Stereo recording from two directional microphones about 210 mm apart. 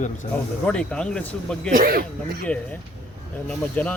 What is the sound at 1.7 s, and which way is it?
Speech, 45° right (ahead or behind).